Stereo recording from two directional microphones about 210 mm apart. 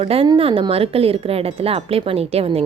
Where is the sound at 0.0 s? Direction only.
25° right (ahead or behind).